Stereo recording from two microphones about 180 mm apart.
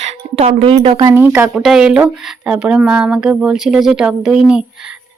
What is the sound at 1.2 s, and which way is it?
Speech, 10° right (ahead or behind).